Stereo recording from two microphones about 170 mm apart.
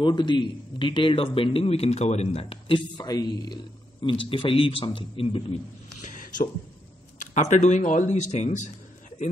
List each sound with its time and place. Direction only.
0.0 s a man's voice: 25° left (ahead or behind)
6.0 s a sound: 50° left (ahead or behind)
7.2 s speech: 45° left (ahead or behind)